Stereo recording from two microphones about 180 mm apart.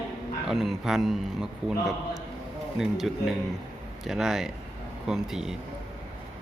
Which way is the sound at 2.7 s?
Centre (ahead or behind).